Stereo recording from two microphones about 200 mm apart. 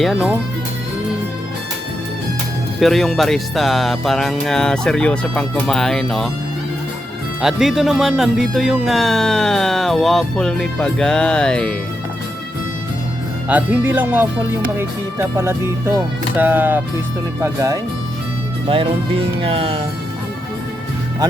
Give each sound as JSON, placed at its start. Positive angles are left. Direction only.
{"t": 0.0, "sound": "speech", "side_deg": 0}
{"t": 2.8, "sound": "speech", "side_deg": 0}
{"t": 7.4, "sound": "speech", "side_deg": 0}
{"t": 13.5, "sound": "speech", "side_deg": -10}
{"t": 19.4, "sound": "speech", "side_deg": -25}